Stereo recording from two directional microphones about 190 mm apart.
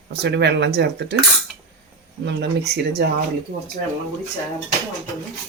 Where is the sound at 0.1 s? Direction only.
60° right (ahead or behind).